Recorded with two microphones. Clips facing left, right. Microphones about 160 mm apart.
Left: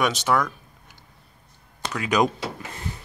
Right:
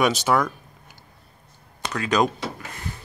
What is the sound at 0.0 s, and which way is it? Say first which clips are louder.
Speech: right 2 dB; 5° right (ahead or behind).